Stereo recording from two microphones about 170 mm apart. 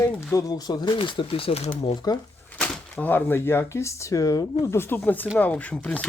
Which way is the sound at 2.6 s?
10° left (ahead or behind).